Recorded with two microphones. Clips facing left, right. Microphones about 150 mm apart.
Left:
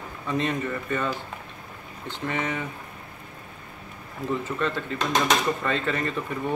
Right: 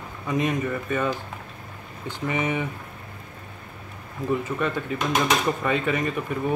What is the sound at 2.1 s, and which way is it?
Speech, 15° right (ahead or behind).